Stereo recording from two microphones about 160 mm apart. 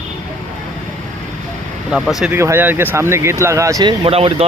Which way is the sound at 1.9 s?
5° right (ahead or behind).